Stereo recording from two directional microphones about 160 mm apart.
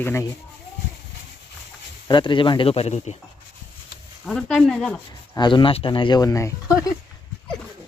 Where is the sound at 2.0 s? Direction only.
30° left (ahead or behind).